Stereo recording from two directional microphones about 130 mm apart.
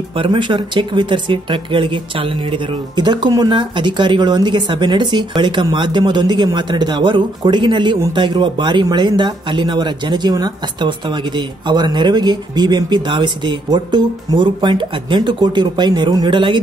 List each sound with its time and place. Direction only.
0.1 s speech: 40° right (ahead or behind)